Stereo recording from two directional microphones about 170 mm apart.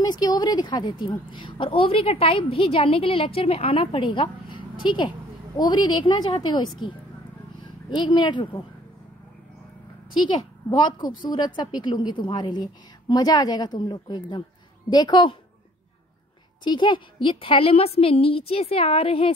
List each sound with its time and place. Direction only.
0.0 s a woman's voice: 25° left (ahead or behind)
7.9 s a woman's voice: 25° left (ahead or behind)
10.7 s a woman's voice: 25° left (ahead or behind)
16.6 s a woman's voice: 25° left (ahead or behind)